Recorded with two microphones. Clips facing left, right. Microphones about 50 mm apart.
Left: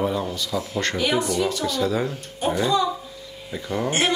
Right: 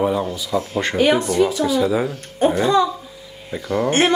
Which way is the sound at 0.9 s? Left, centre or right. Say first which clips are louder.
Right 7 dB; right.